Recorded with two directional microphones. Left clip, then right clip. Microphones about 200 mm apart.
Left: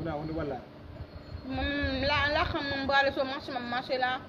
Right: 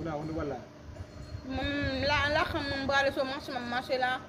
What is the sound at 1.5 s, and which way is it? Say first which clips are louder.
Speech: left 1 dB; 15° right (ahead or behind).